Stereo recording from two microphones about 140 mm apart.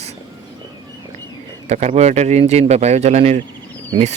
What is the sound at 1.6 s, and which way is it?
Speech, 55° right (ahead or behind).